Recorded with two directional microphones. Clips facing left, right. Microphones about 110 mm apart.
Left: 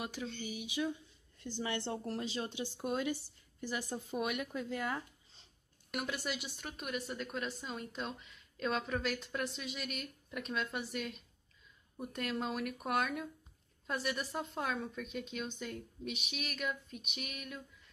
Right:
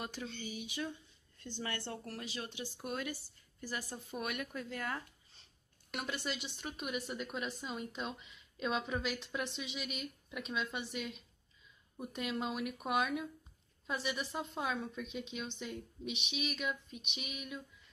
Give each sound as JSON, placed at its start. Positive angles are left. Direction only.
{"t": 0.0, "sound": "speech", "side_deg": 10}